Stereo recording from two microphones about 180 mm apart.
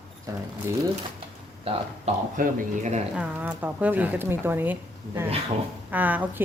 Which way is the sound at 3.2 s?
10° right (ahead or behind).